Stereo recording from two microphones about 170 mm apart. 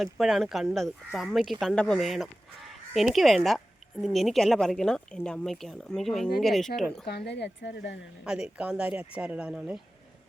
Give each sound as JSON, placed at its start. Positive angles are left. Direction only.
{"t": 0.0, "sound": "speech", "side_deg": 0}
{"t": 7.0, "sound": "speech", "side_deg": 75}
{"t": 8.2, "sound": "speech", "side_deg": -5}